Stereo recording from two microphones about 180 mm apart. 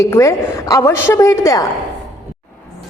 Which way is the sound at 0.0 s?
15° left (ahead or behind).